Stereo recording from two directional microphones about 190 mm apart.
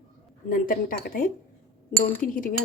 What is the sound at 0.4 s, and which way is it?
Speech, 45° left (ahead or behind).